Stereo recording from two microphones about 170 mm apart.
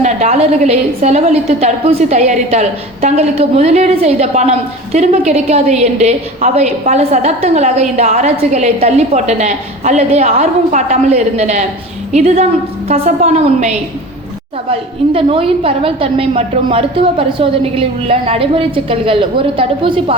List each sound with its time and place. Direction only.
0.0 s a woman's voice: 40° right (ahead or behind)